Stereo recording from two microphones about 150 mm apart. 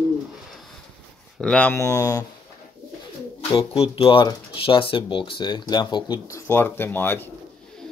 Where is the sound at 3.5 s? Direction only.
35° left (ahead or behind); by 7.3 s 15° left (ahead or behind).